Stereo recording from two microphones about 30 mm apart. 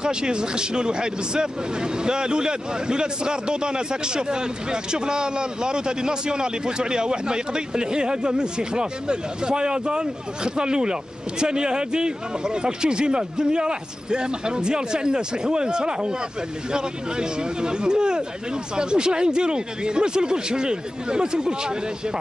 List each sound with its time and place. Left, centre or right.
0.0 s speech: right